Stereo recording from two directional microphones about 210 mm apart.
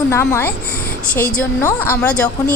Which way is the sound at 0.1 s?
10° left (ahead or behind).